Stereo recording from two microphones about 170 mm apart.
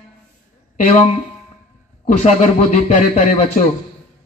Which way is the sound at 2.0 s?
45° left (ahead or behind).